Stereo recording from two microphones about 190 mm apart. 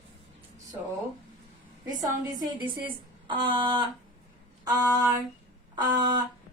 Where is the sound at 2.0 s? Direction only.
20° right (ahead or behind).